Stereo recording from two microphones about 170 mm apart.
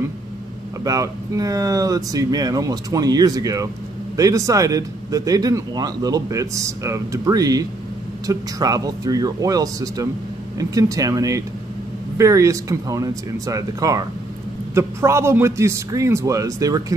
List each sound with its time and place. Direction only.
0.8 s a man's voice: 20° right (ahead or behind)